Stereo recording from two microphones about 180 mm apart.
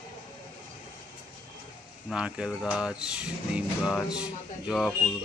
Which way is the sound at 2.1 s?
5° right (ahead or behind).